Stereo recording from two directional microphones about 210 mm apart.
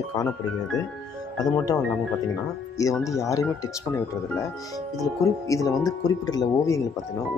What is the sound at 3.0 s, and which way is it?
Speech, 15° left (ahead or behind).